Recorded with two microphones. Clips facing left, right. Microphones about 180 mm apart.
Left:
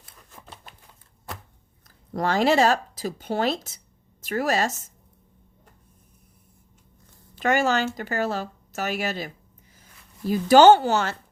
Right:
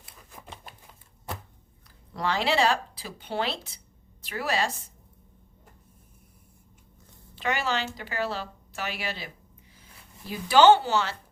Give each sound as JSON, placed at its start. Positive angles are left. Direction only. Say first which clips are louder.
{"t": 0.2, "sound": "a sound", "louder": "right 1 dB", "side_deg": -10}
{"t": 2.1, "sound": "speech", "louder": "left 6 dB", "side_deg": 45}
{"t": 7.3, "sound": "speech", "louder": "left 7 dB", "side_deg": 45}